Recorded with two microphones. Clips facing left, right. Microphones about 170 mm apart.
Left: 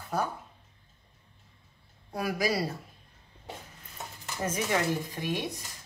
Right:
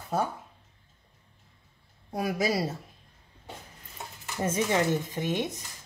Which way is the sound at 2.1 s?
25° right (ahead or behind).